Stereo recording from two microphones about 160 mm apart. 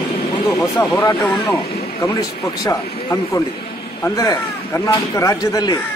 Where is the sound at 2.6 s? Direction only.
20° left (ahead or behind).